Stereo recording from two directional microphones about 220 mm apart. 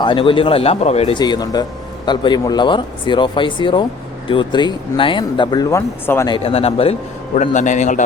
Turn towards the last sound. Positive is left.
turn(degrees=35)  # may be behind; listen again after turning